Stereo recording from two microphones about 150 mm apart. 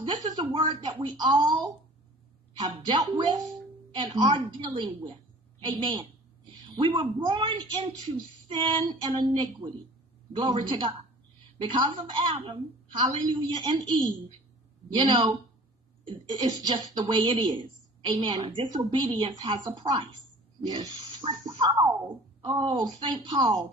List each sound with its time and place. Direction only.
0.0 s a woman's voice: 25° right (ahead or behind)
15.0 s a woman's voice: 30° right (ahead or behind)